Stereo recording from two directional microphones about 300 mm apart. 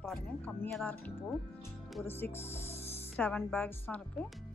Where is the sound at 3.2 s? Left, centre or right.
Centre.